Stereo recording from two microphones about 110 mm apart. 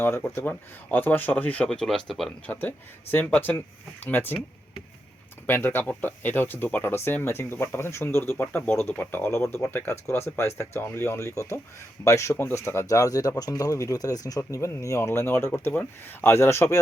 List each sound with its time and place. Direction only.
0.0 s speech: 20° left (ahead or behind); by 2.3 s centre (ahead or behind)
2.5 s speech: 15° left (ahead or behind)
5.5 s speech: 20° left (ahead or behind)